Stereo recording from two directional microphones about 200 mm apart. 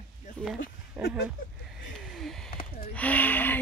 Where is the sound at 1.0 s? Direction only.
10° right (ahead or behind).